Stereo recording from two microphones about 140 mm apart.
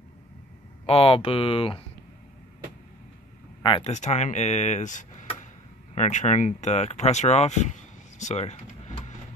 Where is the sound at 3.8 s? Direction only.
55° left (ahead or behind).